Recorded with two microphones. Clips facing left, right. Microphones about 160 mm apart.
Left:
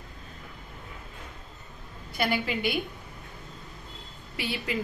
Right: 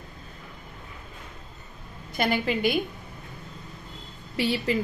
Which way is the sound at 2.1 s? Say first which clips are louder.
Right 3 dB; 45° right (ahead or behind).